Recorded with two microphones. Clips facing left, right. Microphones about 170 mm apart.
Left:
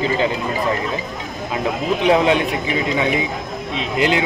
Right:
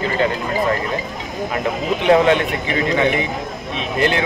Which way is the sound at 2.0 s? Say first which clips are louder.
Right 2 dB; 10° left (ahead or behind).